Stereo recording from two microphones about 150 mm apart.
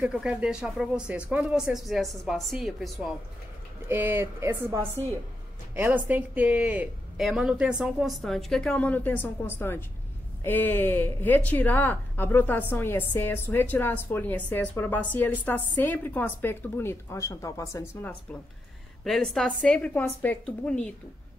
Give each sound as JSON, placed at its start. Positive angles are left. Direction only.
{"t": 0.0, "sound": "speech", "side_deg": -5}
{"t": 3.9, "sound": "a woman's voice", "side_deg": -15}
{"t": 19.0, "sound": "speech", "side_deg": 0}